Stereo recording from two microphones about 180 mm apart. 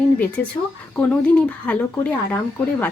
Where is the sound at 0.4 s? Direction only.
10° left (ahead or behind).